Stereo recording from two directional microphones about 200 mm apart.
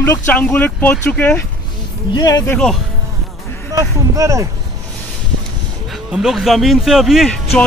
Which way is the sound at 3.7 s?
15° right (ahead or behind).